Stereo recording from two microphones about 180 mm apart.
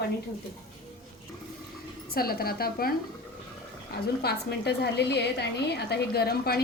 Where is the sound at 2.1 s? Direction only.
55° left (ahead or behind).